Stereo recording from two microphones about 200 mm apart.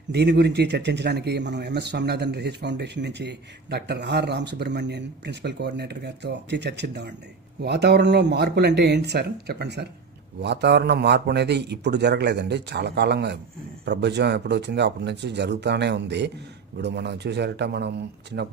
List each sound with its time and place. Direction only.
0.1 s speech: 55° right (ahead or behind)